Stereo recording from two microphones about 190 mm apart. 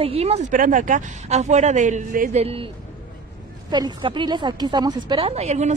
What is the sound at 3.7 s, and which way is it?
A woman's voice, 25° right (ahead or behind).